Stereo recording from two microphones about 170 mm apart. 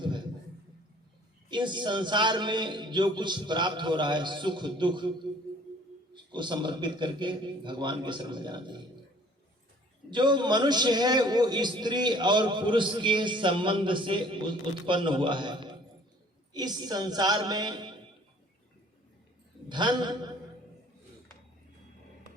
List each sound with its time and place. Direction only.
1.5 s a man's voice: 25° right (ahead or behind)
6.1 s a man's voice: 25° right (ahead or behind)
10.1 s a man's voice: 25° right (ahead or behind)
19.6 s a man's voice: 25° right (ahead or behind)